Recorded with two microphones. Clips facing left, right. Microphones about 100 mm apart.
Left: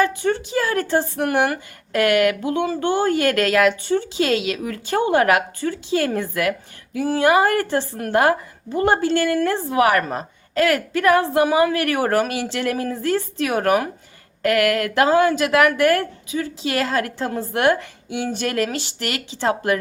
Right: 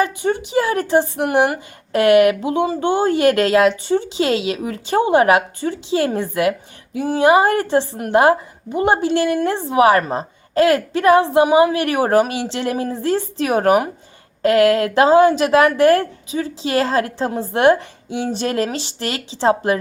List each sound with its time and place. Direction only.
0.0 s speech: 20° right (ahead or behind)